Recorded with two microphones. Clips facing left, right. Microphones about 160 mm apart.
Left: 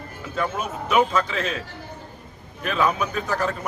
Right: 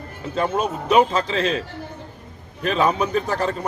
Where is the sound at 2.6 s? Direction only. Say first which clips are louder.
Right 3 dB; 30° right (ahead or behind).